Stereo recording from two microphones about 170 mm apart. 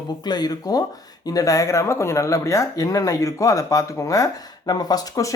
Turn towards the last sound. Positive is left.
turn(degrees=20)  # may be behind; listen again after turning